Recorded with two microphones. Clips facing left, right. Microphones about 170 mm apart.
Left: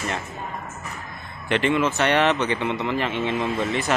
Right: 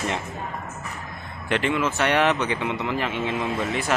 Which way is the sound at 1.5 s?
5° right (ahead or behind).